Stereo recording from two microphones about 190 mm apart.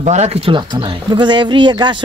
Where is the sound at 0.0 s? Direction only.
35° right (ahead or behind).